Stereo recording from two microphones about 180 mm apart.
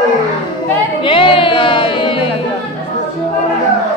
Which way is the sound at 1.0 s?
30° left (ahead or behind).